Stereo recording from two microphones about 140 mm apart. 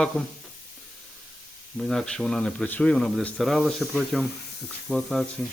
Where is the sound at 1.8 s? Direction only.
Centre (ahead or behind).